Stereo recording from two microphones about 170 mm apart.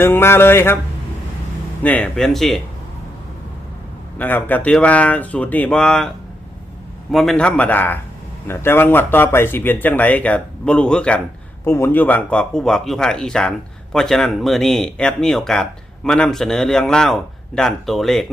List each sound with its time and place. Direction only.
0.0 s speech: 15° left (ahead or behind)
1.8 s a man's voice: 10° left (ahead or behind)
4.2 s speech: 10° left (ahead or behind)
7.1 s a man's voice: centre (ahead or behind)